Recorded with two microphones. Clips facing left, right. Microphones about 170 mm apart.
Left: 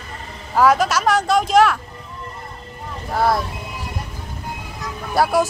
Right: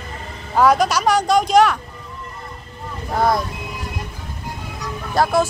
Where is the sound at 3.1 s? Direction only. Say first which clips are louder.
Even; 5° left (ahead or behind).